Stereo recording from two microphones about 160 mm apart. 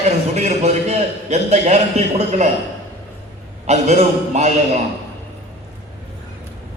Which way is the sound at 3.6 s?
45° right (ahead or behind).